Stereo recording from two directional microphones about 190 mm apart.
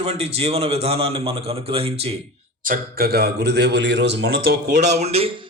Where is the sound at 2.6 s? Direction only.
50° right (ahead or behind).